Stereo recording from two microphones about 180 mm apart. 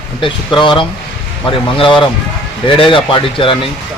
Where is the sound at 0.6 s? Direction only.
25° left (ahead or behind).